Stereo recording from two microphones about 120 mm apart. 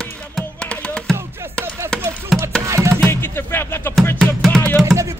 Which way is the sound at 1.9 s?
5° left (ahead or behind).